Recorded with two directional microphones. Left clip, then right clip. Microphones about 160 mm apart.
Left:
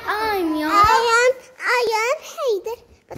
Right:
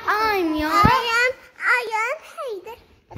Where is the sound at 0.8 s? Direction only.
55° left (ahead or behind); by 2.8 s 35° left (ahead or behind).